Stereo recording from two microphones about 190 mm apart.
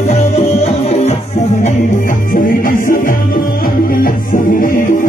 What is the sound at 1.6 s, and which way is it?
Music, 45° left (ahead or behind).